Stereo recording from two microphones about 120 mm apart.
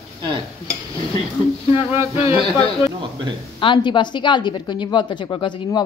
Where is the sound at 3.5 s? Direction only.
45° left (ahead or behind).